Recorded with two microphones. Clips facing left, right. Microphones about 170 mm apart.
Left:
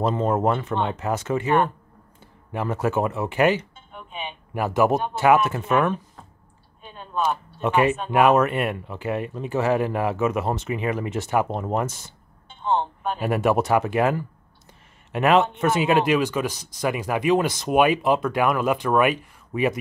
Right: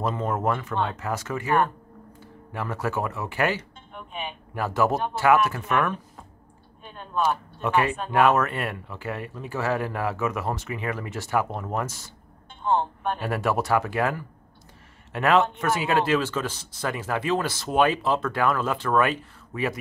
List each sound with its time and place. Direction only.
0.0 s speech: 25° left (ahead or behind)
3.9 s speech: centre (ahead or behind)
4.6 s speech: 15° left (ahead or behind)
6.8 s a sound: centre (ahead or behind)
7.6 s speech: 20° left (ahead or behind)
12.6 s speech: 5° right (ahead or behind)
13.2 s speech: 15° left (ahead or behind)